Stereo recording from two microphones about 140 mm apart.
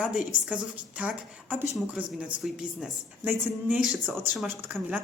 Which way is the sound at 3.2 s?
15° right (ahead or behind).